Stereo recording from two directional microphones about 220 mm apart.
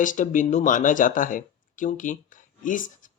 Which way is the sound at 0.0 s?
35° left (ahead or behind).